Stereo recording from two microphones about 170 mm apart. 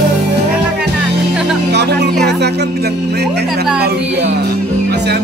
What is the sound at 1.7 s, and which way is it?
Music, 85° right.